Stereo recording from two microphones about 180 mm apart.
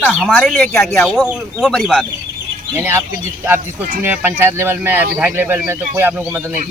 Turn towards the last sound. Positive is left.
turn(degrees=-10)  # may be behind; listen again after turning